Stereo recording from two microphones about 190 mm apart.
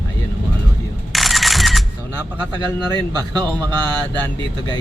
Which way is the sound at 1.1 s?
Centre (ahead or behind).